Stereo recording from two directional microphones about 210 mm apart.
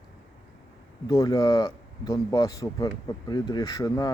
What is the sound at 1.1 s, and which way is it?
Speech, 20° left (ahead or behind).